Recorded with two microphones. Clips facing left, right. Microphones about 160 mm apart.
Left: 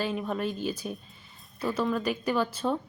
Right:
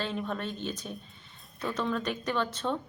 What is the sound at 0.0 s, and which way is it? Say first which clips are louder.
Speech: left 4 dB; 10° left (ahead or behind).